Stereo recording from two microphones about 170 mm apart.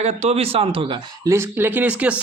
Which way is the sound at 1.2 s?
15° right (ahead or behind).